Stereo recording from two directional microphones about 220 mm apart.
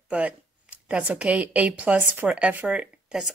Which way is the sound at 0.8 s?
5° right (ahead or behind).